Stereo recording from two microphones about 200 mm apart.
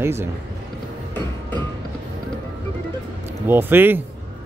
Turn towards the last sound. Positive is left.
turn(degrees=-10)  # may be behind; listen again after turning